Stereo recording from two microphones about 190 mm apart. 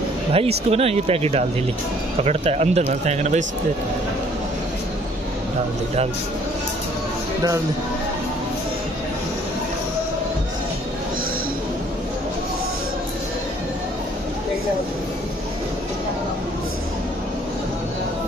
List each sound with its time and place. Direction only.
0.3 s speech: 30° right (ahead or behind)